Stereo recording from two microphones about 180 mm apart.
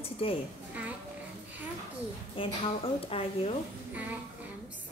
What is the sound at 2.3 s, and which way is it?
A woman's voice, 30° left (ahead or behind).